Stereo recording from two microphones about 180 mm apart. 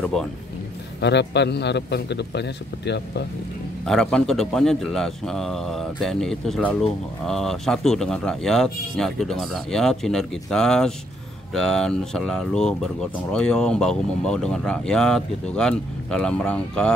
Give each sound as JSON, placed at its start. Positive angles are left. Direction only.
{"t": 1.0, "sound": "a man's voice", "side_deg": 75}
{"t": 3.8, "sound": "a man's voice", "side_deg": 5}